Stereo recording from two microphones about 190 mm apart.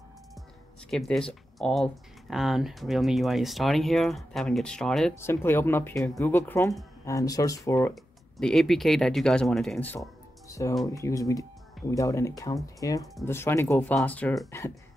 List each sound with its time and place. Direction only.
0.8 s speech: centre (ahead or behind)
7.9 s speech: centre (ahead or behind)